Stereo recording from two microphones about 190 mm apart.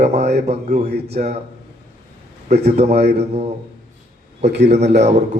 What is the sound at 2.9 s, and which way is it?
Speech, 55° right (ahead or behind).